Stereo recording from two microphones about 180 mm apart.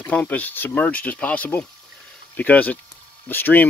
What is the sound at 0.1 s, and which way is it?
Speech, 10° left (ahead or behind).